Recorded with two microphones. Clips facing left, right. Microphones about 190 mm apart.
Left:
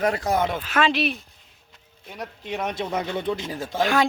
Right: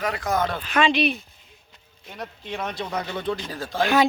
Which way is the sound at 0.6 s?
5° left (ahead or behind).